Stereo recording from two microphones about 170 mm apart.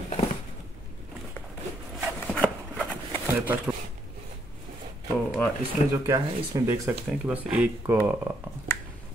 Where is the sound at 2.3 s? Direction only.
5° left (ahead or behind).